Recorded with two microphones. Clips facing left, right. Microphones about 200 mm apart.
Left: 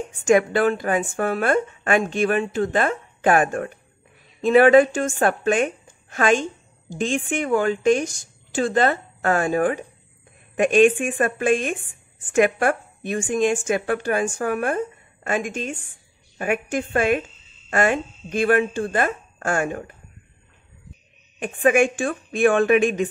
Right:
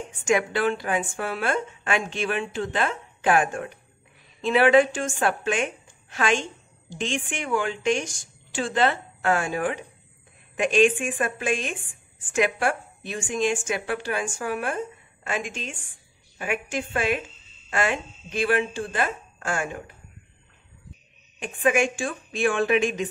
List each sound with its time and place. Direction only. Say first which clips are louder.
0.3 s a woman's voice: left 5 dB; 50° left (ahead or behind)
10.5 s a woman's voice: left 4 dB; 55° left (ahead or behind)
21.4 s a woman's voice: left 5 dB; 55° left (ahead or behind)